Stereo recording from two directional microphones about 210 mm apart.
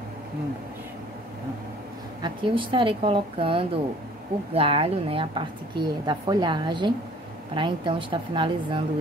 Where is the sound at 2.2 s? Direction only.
25° right (ahead or behind).